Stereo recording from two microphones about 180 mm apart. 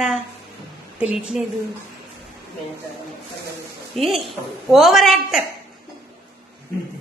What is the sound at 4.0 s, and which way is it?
A woman's voice, centre (ahead or behind).